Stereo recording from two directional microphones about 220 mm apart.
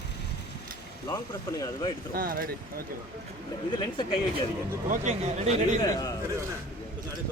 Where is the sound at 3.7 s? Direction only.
20° left (ahead or behind).